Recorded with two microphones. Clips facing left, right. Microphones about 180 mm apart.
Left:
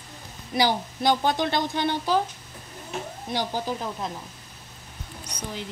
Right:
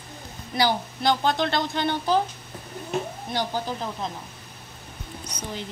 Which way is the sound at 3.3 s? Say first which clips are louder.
Even; 10° left (ahead or behind).